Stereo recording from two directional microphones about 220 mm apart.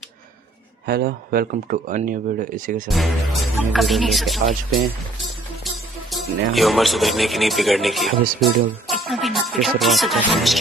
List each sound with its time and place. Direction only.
0.8 s speech: 45° right (ahead or behind)
2.9 s speech: centre (ahead or behind)
5.2 s music: centre (ahead or behind)
6.5 s speech: centre (ahead or behind)